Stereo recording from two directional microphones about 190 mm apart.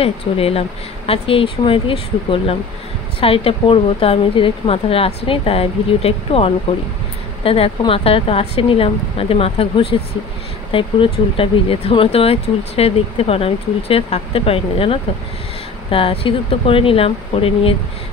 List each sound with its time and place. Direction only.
0.0 s speech: 30° left (ahead or behind)